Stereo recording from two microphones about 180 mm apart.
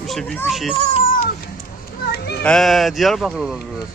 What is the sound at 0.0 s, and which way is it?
Speech, centre (ahead or behind).